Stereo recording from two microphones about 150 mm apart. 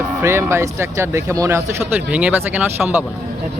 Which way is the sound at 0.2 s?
15° right (ahead or behind).